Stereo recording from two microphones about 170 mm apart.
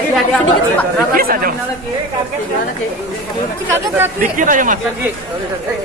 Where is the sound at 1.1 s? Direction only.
55° right (ahead or behind).